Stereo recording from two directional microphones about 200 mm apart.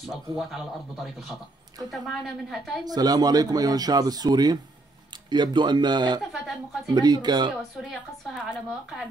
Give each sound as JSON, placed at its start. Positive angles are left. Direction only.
{"t": 0.0, "sound": "speech", "side_deg": 0}
{"t": 2.8, "sound": "speech", "side_deg": -20}
{"t": 7.7, "sound": "speech", "side_deg": 0}